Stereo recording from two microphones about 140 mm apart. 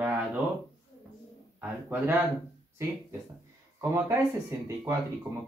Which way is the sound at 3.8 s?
20° right (ahead or behind).